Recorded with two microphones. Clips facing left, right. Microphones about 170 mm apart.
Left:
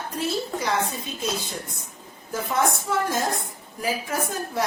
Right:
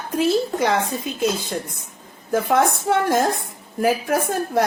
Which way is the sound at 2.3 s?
55° right (ahead or behind).